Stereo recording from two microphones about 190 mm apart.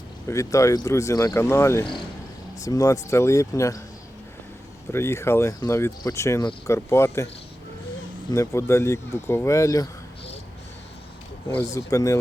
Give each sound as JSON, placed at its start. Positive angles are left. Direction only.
{"t": 0.3, "sound": "speech", "side_deg": 15}
{"t": 4.9, "sound": "speech", "side_deg": 15}
{"t": 8.3, "sound": "speech", "side_deg": 15}
{"t": 11.4, "sound": "speech", "side_deg": 15}